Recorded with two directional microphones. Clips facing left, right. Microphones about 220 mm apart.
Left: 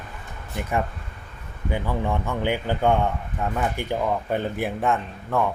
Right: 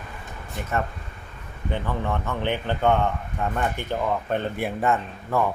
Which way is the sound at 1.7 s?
10° left (ahead or behind).